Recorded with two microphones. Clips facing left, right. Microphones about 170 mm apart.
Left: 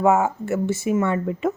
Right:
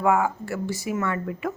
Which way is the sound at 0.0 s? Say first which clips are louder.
Left 3 dB; 25° left (ahead or behind).